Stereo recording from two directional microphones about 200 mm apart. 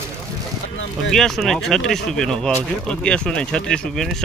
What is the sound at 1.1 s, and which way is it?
Speech, centre (ahead or behind).